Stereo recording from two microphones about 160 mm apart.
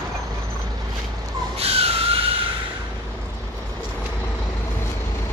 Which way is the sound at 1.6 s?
40° right (ahead or behind).